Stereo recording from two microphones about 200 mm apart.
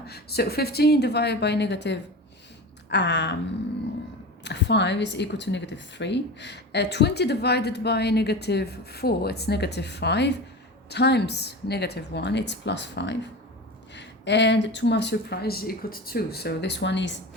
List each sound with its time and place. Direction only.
0.0 s a woman's voice: 50° left (ahead or behind)
4.4 s a woman's voice: 60° left (ahead or behind)